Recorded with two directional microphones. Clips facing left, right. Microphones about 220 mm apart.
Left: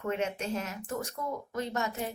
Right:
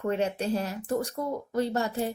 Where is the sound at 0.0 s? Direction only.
35° right (ahead or behind).